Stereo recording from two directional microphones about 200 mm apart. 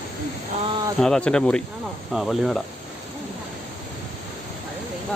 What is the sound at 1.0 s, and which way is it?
Speech, 5° left (ahead or behind).